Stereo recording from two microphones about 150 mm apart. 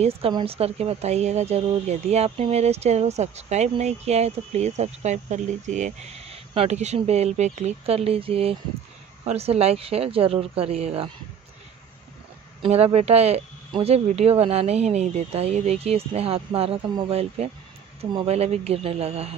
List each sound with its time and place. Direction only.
0.3 s speech: 35° right (ahead or behind)
12.6 s speech: 40° right (ahead or behind)